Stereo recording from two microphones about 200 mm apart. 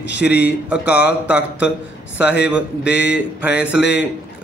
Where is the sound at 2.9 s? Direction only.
60° left (ahead or behind).